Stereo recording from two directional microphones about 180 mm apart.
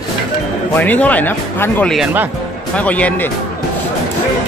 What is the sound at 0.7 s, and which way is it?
Speech, 10° left (ahead or behind).